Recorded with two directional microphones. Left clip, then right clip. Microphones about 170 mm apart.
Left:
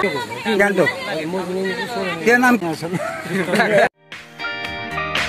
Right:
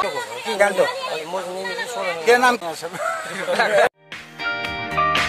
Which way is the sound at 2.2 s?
10° right (ahead or behind).